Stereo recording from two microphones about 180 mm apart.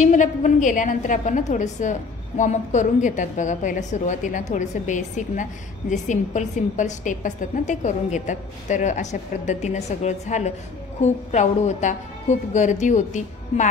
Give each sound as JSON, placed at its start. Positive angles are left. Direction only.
{"t": 0.0, "sound": "a woman's voice", "side_deg": 40}